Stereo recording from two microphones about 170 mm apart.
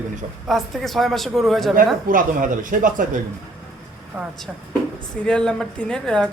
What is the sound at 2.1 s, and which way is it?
Speech, 50° right (ahead or behind).